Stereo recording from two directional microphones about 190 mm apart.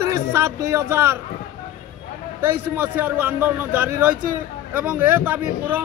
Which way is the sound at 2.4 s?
10° right (ahead or behind).